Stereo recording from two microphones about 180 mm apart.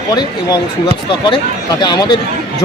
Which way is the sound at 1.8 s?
25° left (ahead or behind).